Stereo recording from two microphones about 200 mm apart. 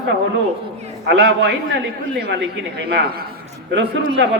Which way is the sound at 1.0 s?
60° right (ahead or behind).